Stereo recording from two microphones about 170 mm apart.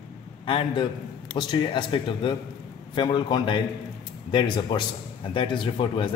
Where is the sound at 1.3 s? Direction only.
30° left (ahead or behind).